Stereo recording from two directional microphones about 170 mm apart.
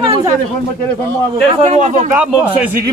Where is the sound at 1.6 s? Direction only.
40° right (ahead or behind).